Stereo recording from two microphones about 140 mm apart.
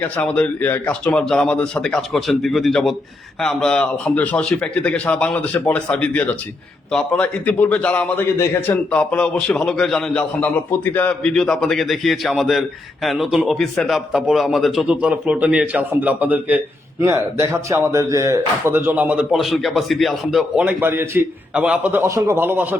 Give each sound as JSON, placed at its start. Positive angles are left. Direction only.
{"t": 0.2, "sound": "a man's voice", "side_deg": 10}
{"t": 19.3, "sound": "a man's voice", "side_deg": 0}
{"t": 22.0, "sound": "a man's voice", "side_deg": -20}